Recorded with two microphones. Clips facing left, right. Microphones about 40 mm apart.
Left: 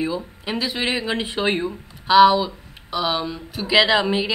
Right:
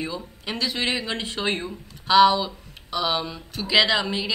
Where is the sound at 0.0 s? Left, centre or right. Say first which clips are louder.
Left 6 dB; centre.